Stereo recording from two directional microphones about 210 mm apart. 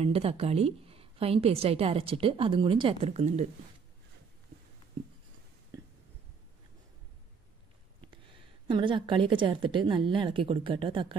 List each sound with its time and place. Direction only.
0.0 s a woman's voice: 30° right (ahead or behind)
8.3 s a woman's voice: 25° right (ahead or behind)